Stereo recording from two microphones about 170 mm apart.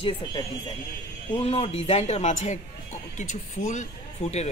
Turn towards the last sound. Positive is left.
turn(degrees=40)  # may be behind; listen again after turning